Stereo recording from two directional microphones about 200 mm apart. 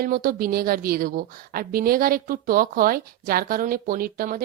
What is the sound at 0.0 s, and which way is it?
A woman's voice, 45° right (ahead or behind).